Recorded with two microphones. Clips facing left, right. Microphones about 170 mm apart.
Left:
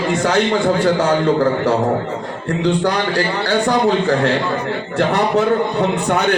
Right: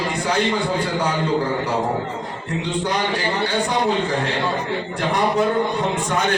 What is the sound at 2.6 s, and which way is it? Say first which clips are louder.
A man's voice: left 6 dB; 70° left (ahead or behind).